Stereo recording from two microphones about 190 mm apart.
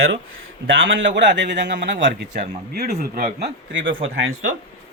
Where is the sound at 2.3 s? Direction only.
55° right (ahead or behind).